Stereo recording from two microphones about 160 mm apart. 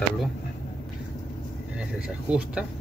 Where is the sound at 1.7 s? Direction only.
5° right (ahead or behind).